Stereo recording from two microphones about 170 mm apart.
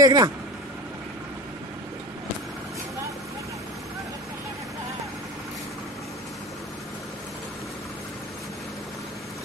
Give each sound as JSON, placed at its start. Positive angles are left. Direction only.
{"t": 0.0, "sound": "speech", "side_deg": -20}